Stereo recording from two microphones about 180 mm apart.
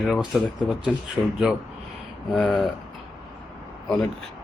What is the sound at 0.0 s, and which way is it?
Speech, centre (ahead or behind).